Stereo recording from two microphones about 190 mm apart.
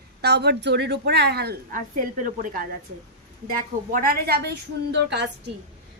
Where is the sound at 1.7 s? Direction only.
45° right (ahead or behind).